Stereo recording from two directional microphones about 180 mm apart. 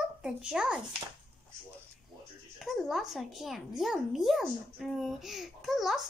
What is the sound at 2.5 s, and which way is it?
A child's voice, centre (ahead or behind).